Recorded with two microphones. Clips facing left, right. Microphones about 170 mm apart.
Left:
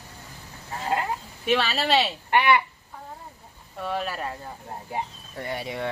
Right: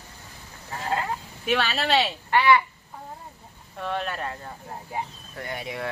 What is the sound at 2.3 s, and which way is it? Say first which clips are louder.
Speech: right 1 dB; 20° left (ahead or behind).